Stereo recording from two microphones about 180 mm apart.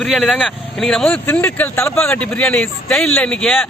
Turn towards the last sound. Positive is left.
turn(degrees=5)  # may be behind; listen again after turning